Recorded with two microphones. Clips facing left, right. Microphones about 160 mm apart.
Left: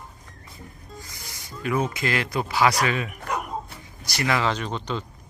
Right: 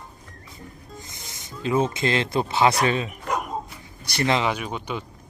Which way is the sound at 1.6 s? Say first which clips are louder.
Right 3 dB; 25° right (ahead or behind).